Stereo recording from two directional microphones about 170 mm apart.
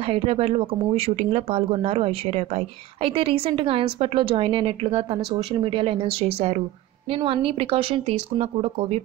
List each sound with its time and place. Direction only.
0.0 s speech: 35° right (ahead or behind)